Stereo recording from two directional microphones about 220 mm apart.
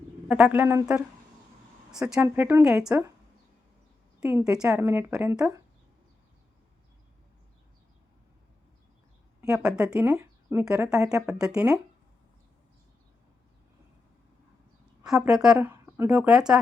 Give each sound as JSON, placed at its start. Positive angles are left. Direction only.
{"t": 0.3, "sound": "a woman's voice", "side_deg": -5}
{"t": 4.2, "sound": "a woman's voice", "side_deg": -5}
{"t": 9.4, "sound": "speech", "side_deg": -5}
{"t": 15.0, "sound": "a woman's voice", "side_deg": 0}